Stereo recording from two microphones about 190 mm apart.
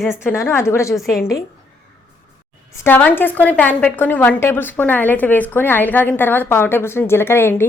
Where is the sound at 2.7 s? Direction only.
10° left (ahead or behind).